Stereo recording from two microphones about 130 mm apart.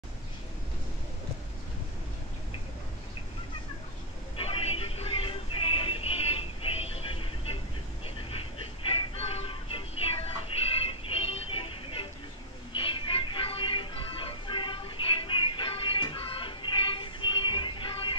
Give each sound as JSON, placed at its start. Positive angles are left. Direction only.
{"t": 4.4, "sound": "music", "side_deg": 50}
{"t": 8.0, "sound": "vehicle", "side_deg": 45}
{"t": 8.8, "sound": "music", "side_deg": 45}
{"t": 10.9, "sound": "vehicle", "side_deg": 45}
{"t": 12.7, "sound": "music", "side_deg": 40}